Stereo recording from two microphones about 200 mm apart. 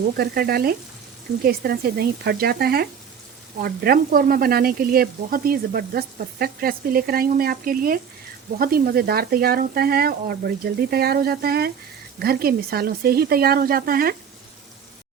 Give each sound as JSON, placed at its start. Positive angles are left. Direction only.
{"t": 0.2, "sound": "speech", "side_deg": -50}